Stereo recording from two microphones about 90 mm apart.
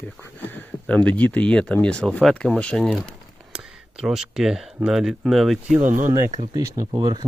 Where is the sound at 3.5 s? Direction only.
10° right (ahead or behind).